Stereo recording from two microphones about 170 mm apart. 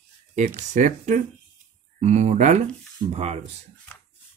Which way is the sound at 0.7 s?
45° right (ahead or behind).